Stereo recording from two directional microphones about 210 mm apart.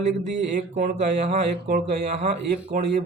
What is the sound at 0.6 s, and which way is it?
Speech, 35° right (ahead or behind).